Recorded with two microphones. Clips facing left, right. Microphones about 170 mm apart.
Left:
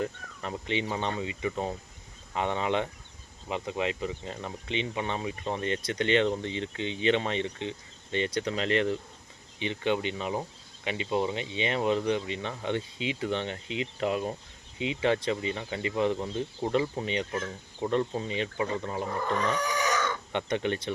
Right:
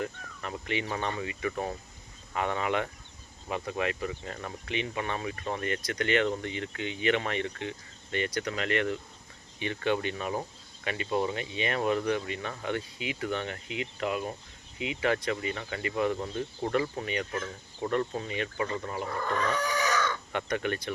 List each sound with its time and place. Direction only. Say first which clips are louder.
0.0 s speech: left 2 dB; 25° left (ahead or behind)